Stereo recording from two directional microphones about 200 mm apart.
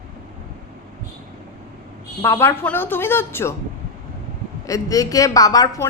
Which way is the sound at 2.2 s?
15° left (ahead or behind).